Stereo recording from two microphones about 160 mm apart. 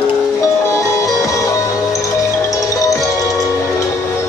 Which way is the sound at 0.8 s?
20° left (ahead or behind).